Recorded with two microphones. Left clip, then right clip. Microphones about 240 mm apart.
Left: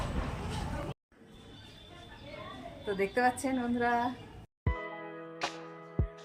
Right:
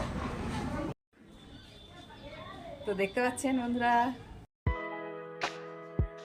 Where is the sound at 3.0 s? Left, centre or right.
Centre.